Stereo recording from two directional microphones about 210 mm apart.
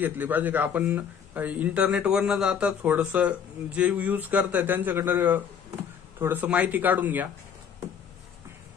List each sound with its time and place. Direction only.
0.0 s speech: 10° right (ahead or behind)